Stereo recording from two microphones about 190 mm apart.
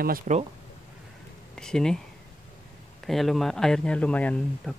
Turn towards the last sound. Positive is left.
turn(degrees=5)  # may be behind; listen again after turning